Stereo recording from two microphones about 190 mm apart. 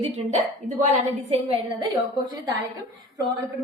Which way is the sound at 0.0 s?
40° right (ahead or behind).